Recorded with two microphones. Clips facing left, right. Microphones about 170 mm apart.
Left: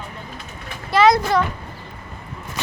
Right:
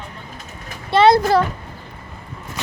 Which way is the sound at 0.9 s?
30° right (ahead or behind).